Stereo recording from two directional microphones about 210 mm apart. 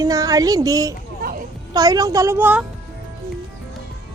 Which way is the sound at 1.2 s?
45° right (ahead or behind).